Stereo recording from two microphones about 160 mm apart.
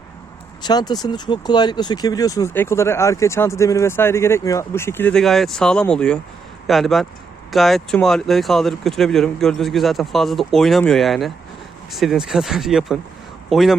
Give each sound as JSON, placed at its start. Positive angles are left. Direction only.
{"t": 0.6, "sound": "speech", "side_deg": 25}